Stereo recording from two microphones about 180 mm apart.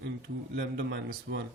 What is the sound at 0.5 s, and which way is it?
Speech, 65° right (ahead or behind).